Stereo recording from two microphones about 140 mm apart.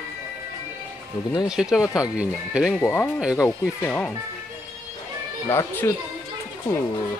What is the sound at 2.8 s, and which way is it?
Speech, 15° left (ahead or behind).